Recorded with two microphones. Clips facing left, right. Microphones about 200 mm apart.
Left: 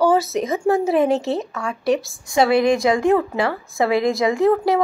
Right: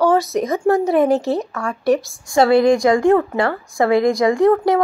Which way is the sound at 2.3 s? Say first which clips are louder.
Right 3 dB; 20° left (ahead or behind).